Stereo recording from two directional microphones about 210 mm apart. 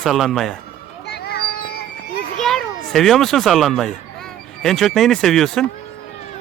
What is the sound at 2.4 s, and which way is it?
A child's voice, centre (ahead or behind).